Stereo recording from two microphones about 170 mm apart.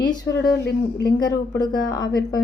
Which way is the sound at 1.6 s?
20° left (ahead or behind).